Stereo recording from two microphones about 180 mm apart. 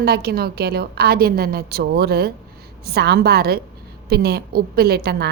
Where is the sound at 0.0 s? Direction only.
60° right (ahead or behind).